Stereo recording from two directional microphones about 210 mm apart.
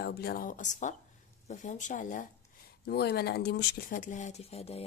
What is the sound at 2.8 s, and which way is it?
Speech, 50° left (ahead or behind).